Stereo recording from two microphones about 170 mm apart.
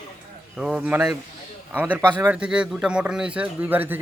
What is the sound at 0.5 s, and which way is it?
Speech, 5° right (ahead or behind).